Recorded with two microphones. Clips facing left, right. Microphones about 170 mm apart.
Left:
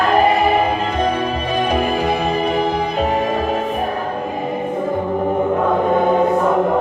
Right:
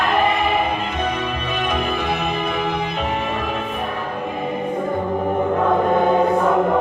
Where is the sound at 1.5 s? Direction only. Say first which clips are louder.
Left 5 dB; 40° left (ahead or behind).